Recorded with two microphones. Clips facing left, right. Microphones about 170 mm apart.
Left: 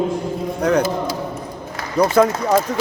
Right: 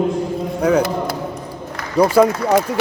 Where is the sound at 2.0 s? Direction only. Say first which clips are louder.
Right 2 dB; 10° right (ahead or behind).